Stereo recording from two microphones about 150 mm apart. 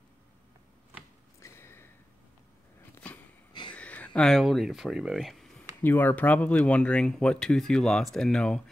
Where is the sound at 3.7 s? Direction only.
10° left (ahead or behind).